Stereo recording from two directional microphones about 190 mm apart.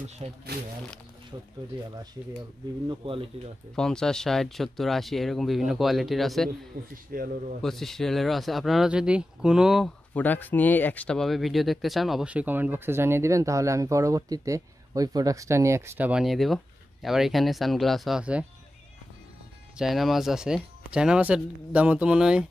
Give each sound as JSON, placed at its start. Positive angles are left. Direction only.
{"t": 0.2, "sound": "speech", "side_deg": -35}
{"t": 1.3, "sound": "speech", "side_deg": -20}
{"t": 2.9, "sound": "speech", "side_deg": -30}
{"t": 3.7, "sound": "speech", "side_deg": 5}
{"t": 6.7, "sound": "a man's voice", "side_deg": -50}
{"t": 7.6, "sound": "speech", "side_deg": 0}
{"t": 19.8, "sound": "speech", "side_deg": 0}